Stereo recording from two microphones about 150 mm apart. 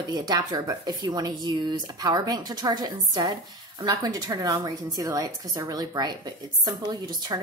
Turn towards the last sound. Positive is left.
turn(degrees=-30)  # may be behind; listen again after turning